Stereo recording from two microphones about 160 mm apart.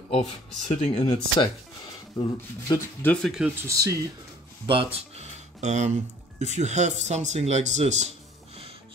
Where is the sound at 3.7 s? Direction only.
20° right (ahead or behind).